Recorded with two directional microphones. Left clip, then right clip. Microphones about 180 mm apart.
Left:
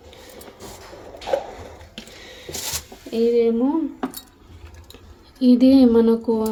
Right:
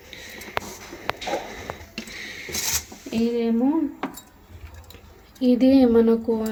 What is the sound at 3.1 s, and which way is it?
Speech, centre (ahead or behind).